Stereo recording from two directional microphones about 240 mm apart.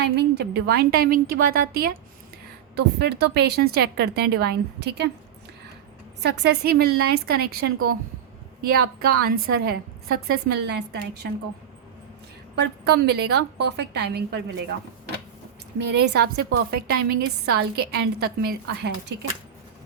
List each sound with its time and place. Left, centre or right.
0.0 s a woman's voice: right
6.2 s a woman's voice: right
12.5 s speech: right
15.8 s a woman's voice: right